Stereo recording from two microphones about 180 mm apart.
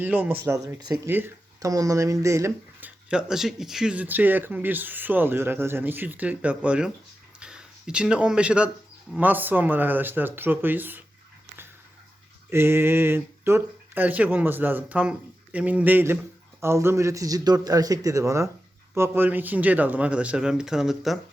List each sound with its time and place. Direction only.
0.0 s speech: 10° right (ahead or behind)
3.1 s speech: 5° right (ahead or behind)
12.5 s speech: 15° right (ahead or behind)